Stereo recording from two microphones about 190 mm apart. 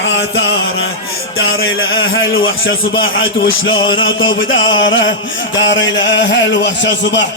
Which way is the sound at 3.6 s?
90° left.